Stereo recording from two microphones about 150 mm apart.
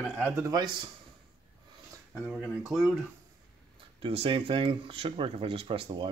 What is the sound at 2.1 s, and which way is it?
Speech, centre (ahead or behind).